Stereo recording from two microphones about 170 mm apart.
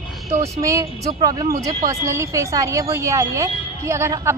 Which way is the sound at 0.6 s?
20° right (ahead or behind).